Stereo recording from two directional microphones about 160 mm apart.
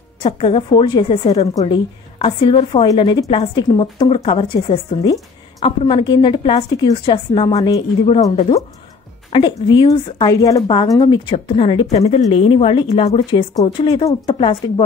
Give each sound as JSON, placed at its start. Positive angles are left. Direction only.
{"t": 0.2, "sound": "a woman's voice", "side_deg": 35}
{"t": 1.5, "sound": "a woman's voice", "side_deg": 25}
{"t": 2.1, "sound": "a woman's voice", "side_deg": 35}
{"t": 9.3, "sound": "a woman's voice", "side_deg": 30}